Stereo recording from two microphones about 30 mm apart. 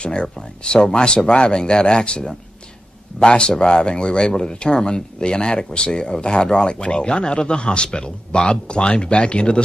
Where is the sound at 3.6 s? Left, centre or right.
Left.